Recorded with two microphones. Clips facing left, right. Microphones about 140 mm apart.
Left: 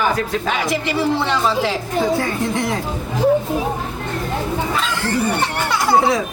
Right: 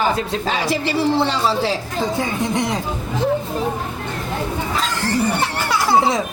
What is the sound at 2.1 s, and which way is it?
Speech, 20° right (ahead or behind).